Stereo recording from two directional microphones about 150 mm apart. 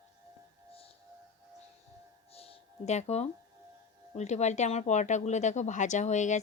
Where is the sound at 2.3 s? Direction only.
40° left (ahead or behind).